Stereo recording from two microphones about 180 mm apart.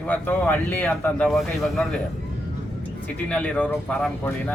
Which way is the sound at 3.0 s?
5° left (ahead or behind).